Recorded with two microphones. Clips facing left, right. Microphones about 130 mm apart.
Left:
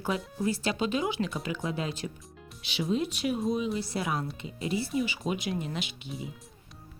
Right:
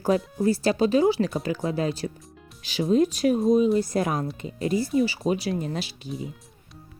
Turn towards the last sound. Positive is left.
turn(degrees=0)  # may be behind; listen again after turning